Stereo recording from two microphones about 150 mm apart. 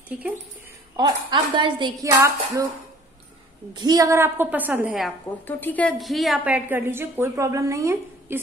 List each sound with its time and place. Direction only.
0.1 s a woman's voice: 10° right (ahead or behind)
0.9 s speech: 30° right (ahead or behind)
3.7 s a woman's voice: 25° right (ahead or behind); by 5.1 s 5° right (ahead or behind)
5.5 s a woman's voice: 10° left (ahead or behind)
5.9 s a woman's voice: centre (ahead or behind); by 8.4 s 20° right (ahead or behind)